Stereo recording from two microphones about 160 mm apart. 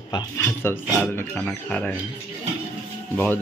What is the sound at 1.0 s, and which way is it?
Speech, 5° left (ahead or behind).